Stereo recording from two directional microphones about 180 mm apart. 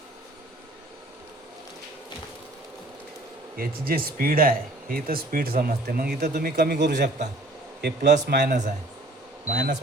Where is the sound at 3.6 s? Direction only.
55° right (ahead or behind).